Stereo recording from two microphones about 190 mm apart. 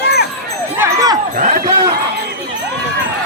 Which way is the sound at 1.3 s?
35° right (ahead or behind).